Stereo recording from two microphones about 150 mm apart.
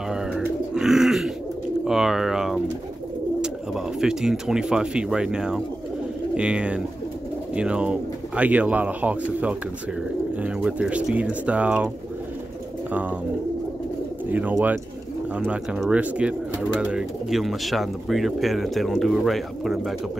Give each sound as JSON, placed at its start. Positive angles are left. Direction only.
{"t": 0.4, "sound": "bird", "side_deg": -5}
{"t": 3.3, "sound": "speech", "side_deg": -5}
{"t": 14.3, "sound": "speech", "side_deg": -10}